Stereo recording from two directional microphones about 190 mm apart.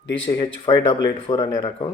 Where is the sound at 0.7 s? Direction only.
25° left (ahead or behind).